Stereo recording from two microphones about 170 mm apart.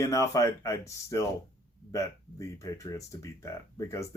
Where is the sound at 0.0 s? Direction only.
20° left (ahead or behind).